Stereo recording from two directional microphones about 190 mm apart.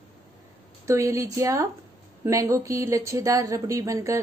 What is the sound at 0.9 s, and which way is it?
Speech, 15° right (ahead or behind).